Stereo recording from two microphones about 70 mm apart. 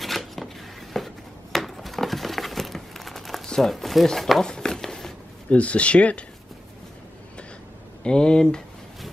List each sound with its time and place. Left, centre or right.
0.0 s a sound: centre
5.5 s speech: centre
8.0 s speech: centre